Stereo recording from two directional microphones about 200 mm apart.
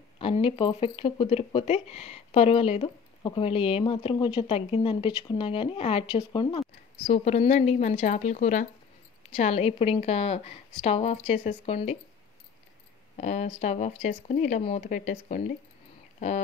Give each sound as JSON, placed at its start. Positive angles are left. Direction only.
{"t": 0.2, "sound": "a woman's voice", "side_deg": 25}
{"t": 13.1, "sound": "a woman's voice", "side_deg": 35}